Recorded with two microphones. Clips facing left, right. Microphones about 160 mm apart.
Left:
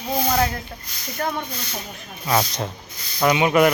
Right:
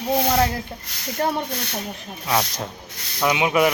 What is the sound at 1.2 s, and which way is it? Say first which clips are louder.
Speech: right 3 dB; 30° right (ahead or behind).